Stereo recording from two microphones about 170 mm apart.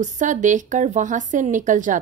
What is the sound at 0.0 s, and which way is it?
A woman's voice, 45° right (ahead or behind).